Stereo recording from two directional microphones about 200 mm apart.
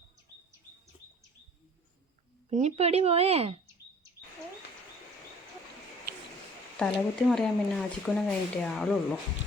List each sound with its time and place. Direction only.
2.5 s speech: 35° right (ahead or behind)
6.7 s speech: 5° left (ahead or behind)